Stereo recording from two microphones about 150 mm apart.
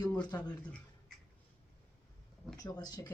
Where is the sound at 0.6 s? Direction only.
10° left (ahead or behind).